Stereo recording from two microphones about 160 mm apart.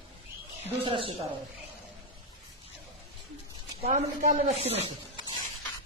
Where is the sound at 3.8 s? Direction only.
40° right (ahead or behind).